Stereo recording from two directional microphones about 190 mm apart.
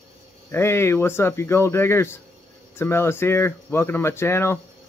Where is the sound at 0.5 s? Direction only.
15° left (ahead or behind).